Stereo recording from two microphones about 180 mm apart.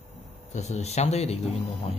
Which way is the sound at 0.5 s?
40° left (ahead or behind).